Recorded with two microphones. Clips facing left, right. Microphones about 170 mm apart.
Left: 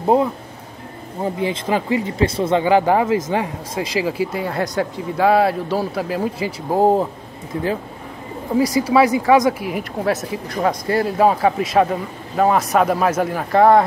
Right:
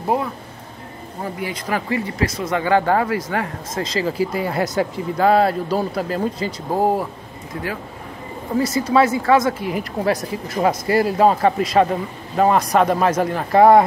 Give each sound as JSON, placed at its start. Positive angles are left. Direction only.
{"t": 0.0, "sound": "speech", "side_deg": 25}
{"t": 6.8, "sound": "speech", "side_deg": 20}
{"t": 8.5, "sound": "speech", "side_deg": 10}
{"t": 9.7, "sound": "speech", "side_deg": 0}